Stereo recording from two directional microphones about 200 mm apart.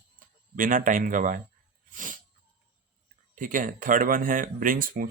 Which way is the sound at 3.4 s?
40° right (ahead or behind).